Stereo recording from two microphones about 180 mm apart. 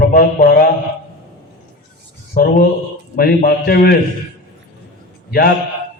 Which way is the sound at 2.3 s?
55° left (ahead or behind).